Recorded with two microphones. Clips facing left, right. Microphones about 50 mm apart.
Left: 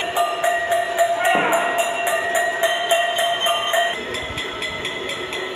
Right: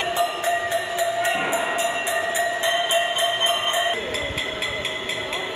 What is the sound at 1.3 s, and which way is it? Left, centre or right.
Music, left.